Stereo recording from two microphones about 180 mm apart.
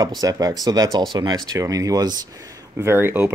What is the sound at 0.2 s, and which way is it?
Speech, 20° right (ahead or behind).